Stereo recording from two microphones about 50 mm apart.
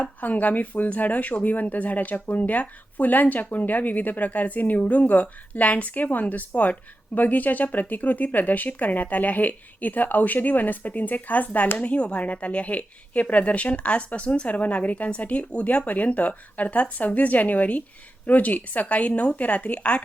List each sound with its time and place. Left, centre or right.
0.0 s speech: left